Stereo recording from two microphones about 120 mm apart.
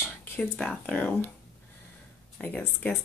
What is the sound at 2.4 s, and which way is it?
Speech, 10° left (ahead or behind).